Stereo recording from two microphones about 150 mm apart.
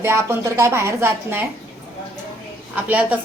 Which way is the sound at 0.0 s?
15° right (ahead or behind).